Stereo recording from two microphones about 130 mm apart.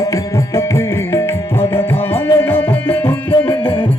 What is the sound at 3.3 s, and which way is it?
Music, 40° left (ahead or behind).